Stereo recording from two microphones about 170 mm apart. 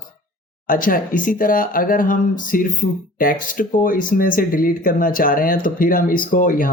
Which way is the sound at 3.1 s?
55° left (ahead or behind).